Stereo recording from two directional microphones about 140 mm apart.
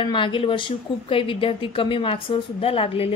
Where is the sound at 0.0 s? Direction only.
35° left (ahead or behind).